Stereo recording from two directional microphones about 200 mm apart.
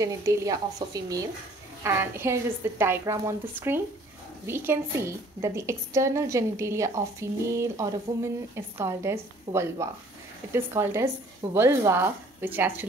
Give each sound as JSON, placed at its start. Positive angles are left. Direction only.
{"t": 0.0, "sound": "a woman's voice", "side_deg": -15}